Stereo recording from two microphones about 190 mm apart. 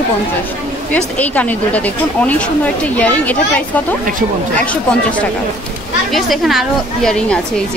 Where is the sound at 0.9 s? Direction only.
10° left (ahead or behind).